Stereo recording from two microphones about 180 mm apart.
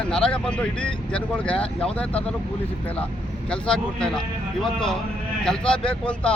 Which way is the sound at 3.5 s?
5° left (ahead or behind).